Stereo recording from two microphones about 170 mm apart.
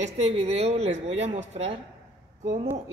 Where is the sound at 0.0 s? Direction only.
40° right (ahead or behind).